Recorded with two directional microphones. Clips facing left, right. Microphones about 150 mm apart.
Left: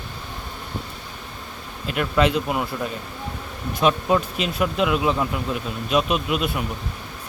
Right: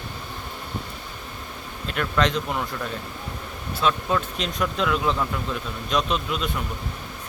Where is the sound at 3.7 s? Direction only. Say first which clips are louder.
Left 4 dB; 15° left (ahead or behind).